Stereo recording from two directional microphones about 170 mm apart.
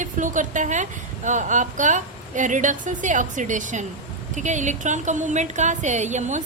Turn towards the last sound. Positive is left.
turn(degrees=-45)  # may be behind; listen again after turning